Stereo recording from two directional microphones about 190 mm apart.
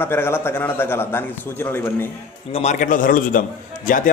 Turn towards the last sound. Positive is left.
turn(degrees=45)  # may be behind; listen again after turning